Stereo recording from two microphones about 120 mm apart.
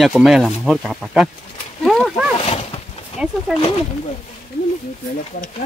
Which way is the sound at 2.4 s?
55° left (ahead or behind).